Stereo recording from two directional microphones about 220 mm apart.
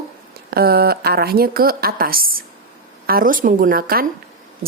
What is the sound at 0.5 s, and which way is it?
A woman's voice, 45° right (ahead or behind).